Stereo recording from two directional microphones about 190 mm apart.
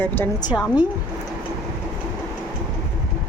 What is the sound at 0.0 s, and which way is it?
Speech, 10° left (ahead or behind).